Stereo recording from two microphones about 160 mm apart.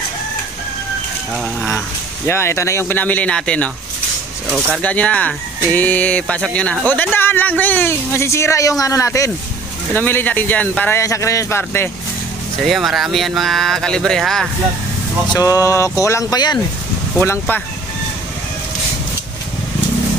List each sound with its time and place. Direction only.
2.2 s speech: 15° left (ahead or behind)
4.8 s speech: 10° left (ahead or behind)
12.6 s speech: centre (ahead or behind)
15.3 s speech: 20° left (ahead or behind)
17.2 s speech: 15° left (ahead or behind)